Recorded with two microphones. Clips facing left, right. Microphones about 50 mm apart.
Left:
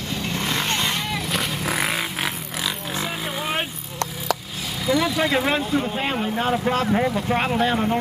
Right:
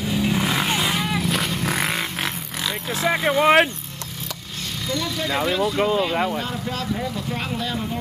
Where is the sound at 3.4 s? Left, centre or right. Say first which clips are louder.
Right 12 dB; right.